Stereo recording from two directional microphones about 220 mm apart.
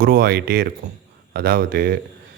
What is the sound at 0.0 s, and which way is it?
A man's voice, 40° right (ahead or behind).